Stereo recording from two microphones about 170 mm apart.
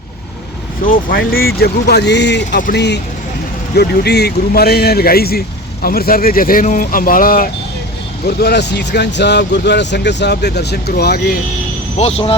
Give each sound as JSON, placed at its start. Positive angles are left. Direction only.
{"t": 0.9, "sound": "speech", "side_deg": 60}
{"t": 8.4, "sound": "speech", "side_deg": 75}
{"t": 11.9, "sound": "speech", "side_deg": 35}